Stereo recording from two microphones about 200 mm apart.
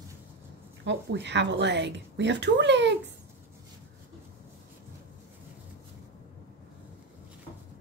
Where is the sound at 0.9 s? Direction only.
60° right (ahead or behind).